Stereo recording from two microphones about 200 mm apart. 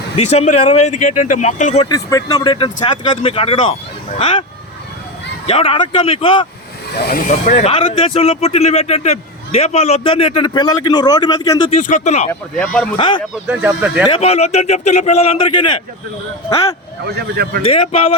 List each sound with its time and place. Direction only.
0.2 s a man's voice: 35° left (ahead or behind)
1.9 s speech: 20° left (ahead or behind)
5.5 s speech: 25° left (ahead or behind)
6.9 s speech: 50° left (ahead or behind); by 11.7 s 20° left (ahead or behind)
11.7 s a man's voice: 40° left (ahead or behind)
12.3 s speech: 5° left (ahead or behind)
13.0 s speech: 25° left (ahead or behind)
13.3 s speech: 5° right (ahead or behind)
14.1 s a man's voice: 30° left (ahead or behind)
17.3 s speech: 55° right (ahead or behind)
17.6 s speech: 30° left (ahead or behind)